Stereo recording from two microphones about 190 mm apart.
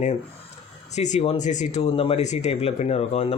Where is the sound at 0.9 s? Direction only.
35° left (ahead or behind).